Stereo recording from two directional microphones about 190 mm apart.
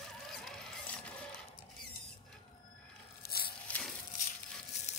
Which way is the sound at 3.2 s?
55° left (ahead or behind).